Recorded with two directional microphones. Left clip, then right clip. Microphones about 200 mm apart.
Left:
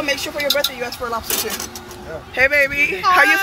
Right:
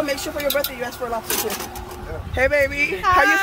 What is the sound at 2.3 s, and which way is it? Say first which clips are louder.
Speech: left 3 dB; 10° right (ahead or behind).